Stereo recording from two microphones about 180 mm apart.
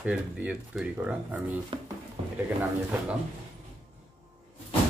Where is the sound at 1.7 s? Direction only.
30° right (ahead or behind).